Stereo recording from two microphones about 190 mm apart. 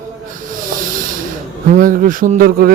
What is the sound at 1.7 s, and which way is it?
Speech, 45° right (ahead or behind).